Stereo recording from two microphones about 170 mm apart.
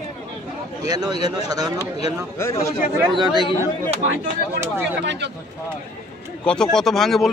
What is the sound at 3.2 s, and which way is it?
Speech, 25° right (ahead or behind).